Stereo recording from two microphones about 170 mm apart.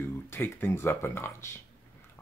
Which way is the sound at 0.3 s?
15° left (ahead or behind).